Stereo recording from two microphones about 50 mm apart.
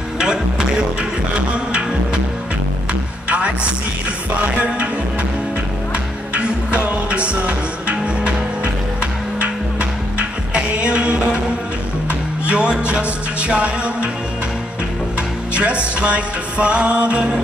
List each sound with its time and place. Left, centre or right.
0.2 s music: centre
3.3 s music: right
6.3 s music: right
12.4 s music: right
15.5 s music: right